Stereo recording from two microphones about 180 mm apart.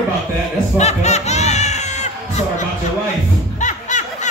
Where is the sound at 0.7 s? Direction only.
40° left (ahead or behind).